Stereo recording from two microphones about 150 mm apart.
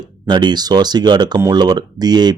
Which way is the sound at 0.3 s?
30° right (ahead or behind).